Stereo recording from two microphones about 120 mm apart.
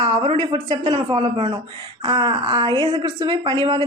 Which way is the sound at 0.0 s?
35° right (ahead or behind).